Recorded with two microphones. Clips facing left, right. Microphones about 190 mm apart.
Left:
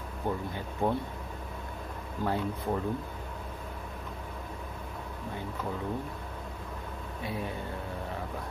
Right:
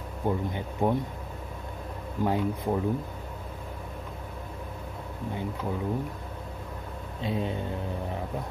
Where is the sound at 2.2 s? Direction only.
15° right (ahead or behind).